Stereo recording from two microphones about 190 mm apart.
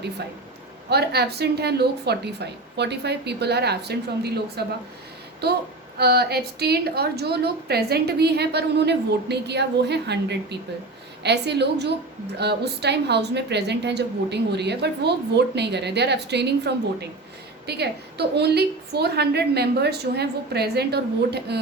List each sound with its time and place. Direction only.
0.9 s a woman's voice: 60° right (ahead or behind)